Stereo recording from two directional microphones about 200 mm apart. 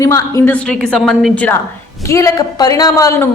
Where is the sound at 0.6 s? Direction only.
5° left (ahead or behind).